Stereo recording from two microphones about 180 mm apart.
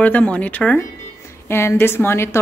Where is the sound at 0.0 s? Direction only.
10° left (ahead or behind).